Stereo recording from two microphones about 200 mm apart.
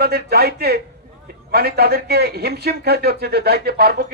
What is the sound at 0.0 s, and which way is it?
A man's voice, 50° right (ahead or behind).